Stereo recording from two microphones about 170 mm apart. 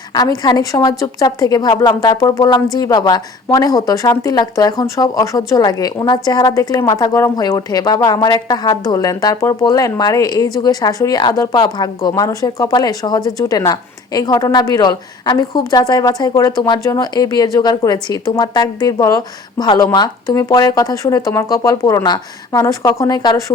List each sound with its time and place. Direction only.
0.1 s speech: 20° left (ahead or behind)